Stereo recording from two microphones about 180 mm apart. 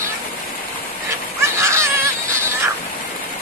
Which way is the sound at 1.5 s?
15° right (ahead or behind).